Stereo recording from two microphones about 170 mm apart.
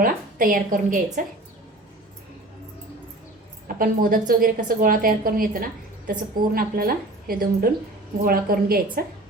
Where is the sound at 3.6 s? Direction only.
55° right (ahead or behind).